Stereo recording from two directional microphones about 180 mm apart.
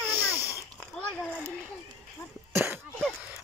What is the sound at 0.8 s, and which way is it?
Speech, 5° left (ahead or behind).